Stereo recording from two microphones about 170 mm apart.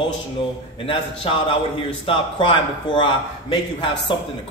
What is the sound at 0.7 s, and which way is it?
A man's voice, 30° left (ahead or behind).